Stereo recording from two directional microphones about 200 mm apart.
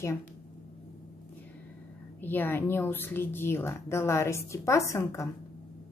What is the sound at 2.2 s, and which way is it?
Speech, 10° left (ahead or behind).